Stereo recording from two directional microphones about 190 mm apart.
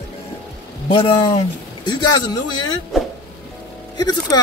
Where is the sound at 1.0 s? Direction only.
25° left (ahead or behind).